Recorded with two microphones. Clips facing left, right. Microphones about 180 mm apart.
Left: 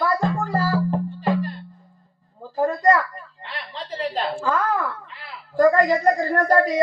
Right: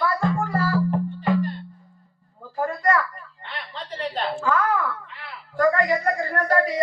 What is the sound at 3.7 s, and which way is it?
Chuckle, 35° left (ahead or behind).